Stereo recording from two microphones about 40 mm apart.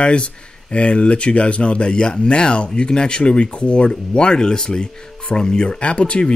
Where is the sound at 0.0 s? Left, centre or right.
Left.